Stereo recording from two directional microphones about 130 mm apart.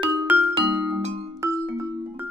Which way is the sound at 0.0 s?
30° right (ahead or behind).